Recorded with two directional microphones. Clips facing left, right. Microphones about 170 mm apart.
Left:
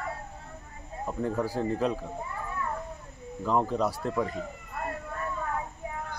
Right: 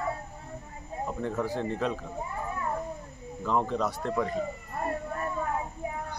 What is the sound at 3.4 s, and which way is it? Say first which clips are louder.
Speech: left 1 dB; 5° left (ahead or behind).